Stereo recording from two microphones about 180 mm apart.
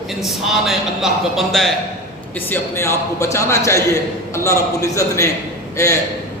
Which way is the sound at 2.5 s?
15° left (ahead or behind).